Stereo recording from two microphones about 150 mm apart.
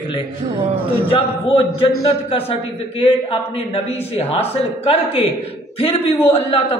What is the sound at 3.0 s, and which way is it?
A man's voice, 40° left (ahead or behind).